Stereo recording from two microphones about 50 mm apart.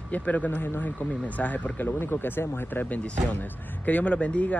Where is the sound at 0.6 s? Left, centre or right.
Left.